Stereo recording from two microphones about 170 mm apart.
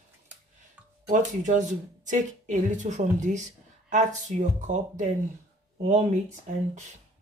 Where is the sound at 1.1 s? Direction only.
45° right (ahead or behind).